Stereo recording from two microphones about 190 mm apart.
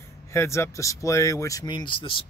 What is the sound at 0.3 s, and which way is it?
Speech, 15° left (ahead or behind).